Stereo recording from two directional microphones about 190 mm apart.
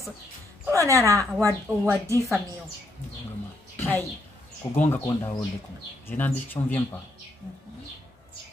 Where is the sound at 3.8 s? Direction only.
10° left (ahead or behind).